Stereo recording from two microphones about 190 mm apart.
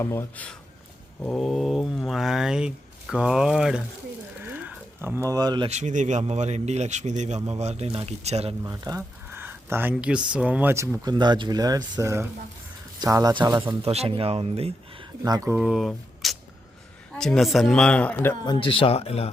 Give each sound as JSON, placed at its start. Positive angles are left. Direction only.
{"t": 0.0, "sound": "speech", "side_deg": 15}
{"t": 4.4, "sound": "a sound", "side_deg": -10}
{"t": 5.6, "sound": "speech", "side_deg": -40}
{"t": 8.6, "sound": "speech", "side_deg": -20}
{"t": 13.7, "sound": "speech", "side_deg": -30}
{"t": 15.2, "sound": "speech", "side_deg": -20}
{"t": 18.4, "sound": "speech", "side_deg": 25}